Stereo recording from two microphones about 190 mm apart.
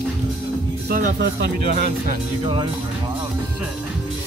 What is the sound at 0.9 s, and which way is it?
Speech, 50° right (ahead or behind).